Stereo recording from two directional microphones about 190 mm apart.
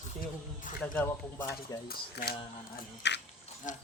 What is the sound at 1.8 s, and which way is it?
Speech, 55° left (ahead or behind).